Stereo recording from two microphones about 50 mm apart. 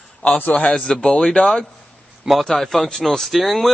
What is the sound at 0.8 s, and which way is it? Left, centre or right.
Speech, centre.